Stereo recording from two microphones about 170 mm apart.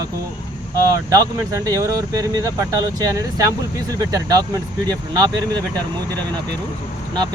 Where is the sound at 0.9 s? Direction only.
20° right (ahead or behind).